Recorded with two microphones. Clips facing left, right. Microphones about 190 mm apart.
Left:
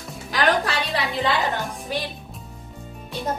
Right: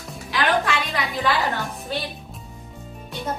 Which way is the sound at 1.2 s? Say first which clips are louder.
Right 1 dB; 20° left (ahead or behind).